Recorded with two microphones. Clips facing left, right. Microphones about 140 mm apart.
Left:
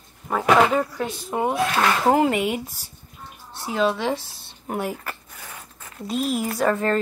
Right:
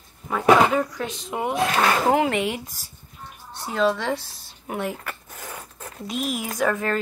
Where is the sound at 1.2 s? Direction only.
15° left (ahead or behind).